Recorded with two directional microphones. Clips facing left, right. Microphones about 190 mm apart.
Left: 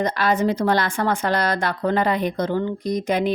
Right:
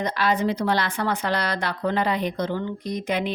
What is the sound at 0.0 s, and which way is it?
A woman's voice, 45° left (ahead or behind).